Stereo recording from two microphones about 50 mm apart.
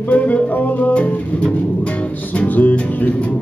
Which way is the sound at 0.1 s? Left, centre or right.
Left.